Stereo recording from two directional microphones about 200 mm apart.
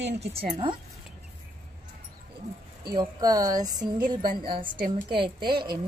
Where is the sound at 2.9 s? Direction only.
15° right (ahead or behind).